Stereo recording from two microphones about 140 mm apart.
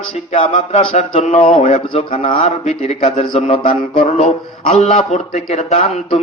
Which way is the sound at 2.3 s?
55° left (ahead or behind).